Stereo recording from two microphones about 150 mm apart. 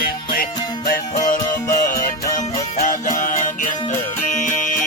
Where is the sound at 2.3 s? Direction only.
55° left (ahead or behind).